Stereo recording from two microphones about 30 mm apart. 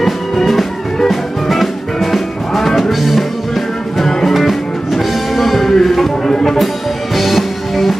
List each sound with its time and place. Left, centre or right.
1.0 s music: centre
4.3 s music: centre
6.2 s music: centre
7.2 s music: centre